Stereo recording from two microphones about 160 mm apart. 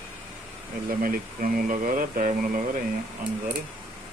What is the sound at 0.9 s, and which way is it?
Speech, 65° right (ahead or behind).